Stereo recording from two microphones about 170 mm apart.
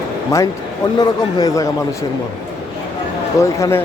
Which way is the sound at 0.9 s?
20° left (ahead or behind).